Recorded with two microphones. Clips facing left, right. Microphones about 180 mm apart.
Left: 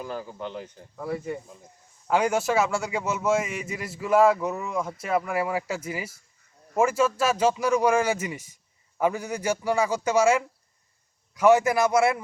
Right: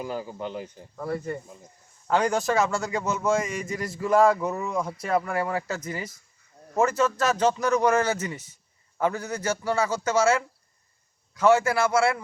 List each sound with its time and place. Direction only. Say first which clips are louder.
0.0 s speech: right 2 dB; 10° right (ahead or behind)
0.9 s a man's voice: even; 5° left (ahead or behind)